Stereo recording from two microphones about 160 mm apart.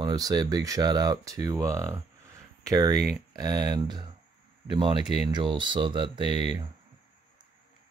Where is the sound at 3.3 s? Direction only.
25° right (ahead or behind).